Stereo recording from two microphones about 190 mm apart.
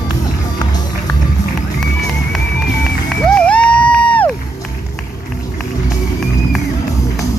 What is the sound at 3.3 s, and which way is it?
Music, 5° left (ahead or behind).